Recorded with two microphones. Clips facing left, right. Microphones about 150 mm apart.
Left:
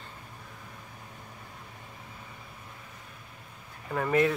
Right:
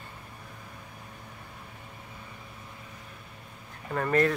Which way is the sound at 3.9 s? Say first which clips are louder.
Even; 5° left (ahead or behind).